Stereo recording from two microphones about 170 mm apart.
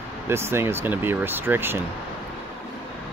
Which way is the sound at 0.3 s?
15° right (ahead or behind).